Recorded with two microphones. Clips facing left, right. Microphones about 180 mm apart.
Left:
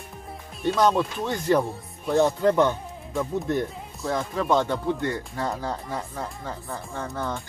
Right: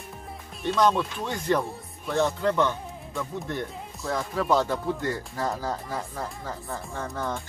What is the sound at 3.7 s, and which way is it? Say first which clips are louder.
Speech: left 2 dB; centre (ahead or behind).